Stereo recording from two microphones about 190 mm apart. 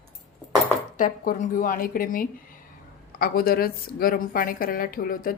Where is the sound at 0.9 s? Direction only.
45° left (ahead or behind).